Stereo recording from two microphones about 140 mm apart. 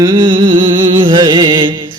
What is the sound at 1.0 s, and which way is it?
Music, 30° right (ahead or behind).